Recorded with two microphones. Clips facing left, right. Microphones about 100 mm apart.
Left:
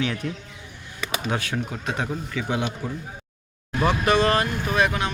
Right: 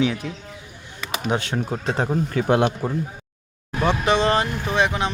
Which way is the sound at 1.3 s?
25° right (ahead or behind).